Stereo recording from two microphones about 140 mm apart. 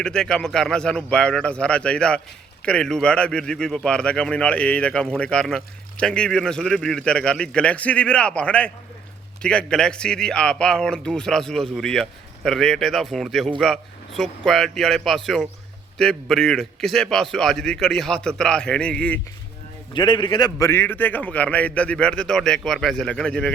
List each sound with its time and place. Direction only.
0.0 s a man's voice: 5° left (ahead or behind)
19.9 s a man's voice: 35° left (ahead or behind)
20.7 s speech: 15° left (ahead or behind)